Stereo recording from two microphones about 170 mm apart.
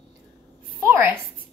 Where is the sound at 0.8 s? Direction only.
15° right (ahead or behind).